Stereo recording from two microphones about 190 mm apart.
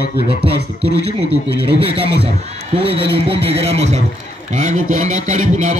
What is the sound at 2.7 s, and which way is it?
A man's voice, 30° right (ahead or behind).